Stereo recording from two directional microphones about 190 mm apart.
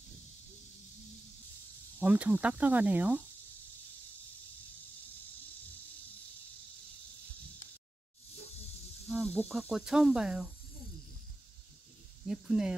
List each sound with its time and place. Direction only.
2.0 s speech: 10° right (ahead or behind)
9.3 s speech: 5° left (ahead or behind)
12.3 s speech: 5° right (ahead or behind)